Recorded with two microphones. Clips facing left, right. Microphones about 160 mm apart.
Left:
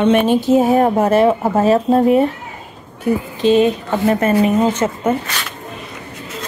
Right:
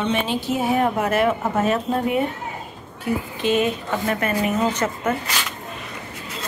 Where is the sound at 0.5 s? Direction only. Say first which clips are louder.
Left 7 dB; 40° left (ahead or behind).